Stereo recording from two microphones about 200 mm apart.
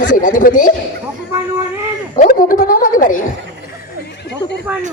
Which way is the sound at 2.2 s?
45° left (ahead or behind).